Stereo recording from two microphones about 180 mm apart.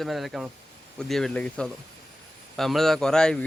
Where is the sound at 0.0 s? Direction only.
Centre (ahead or behind).